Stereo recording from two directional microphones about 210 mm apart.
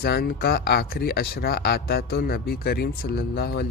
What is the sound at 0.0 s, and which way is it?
A man's voice, 45° left (ahead or behind).